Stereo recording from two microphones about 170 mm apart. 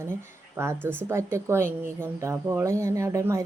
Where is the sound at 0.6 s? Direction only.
15° right (ahead or behind).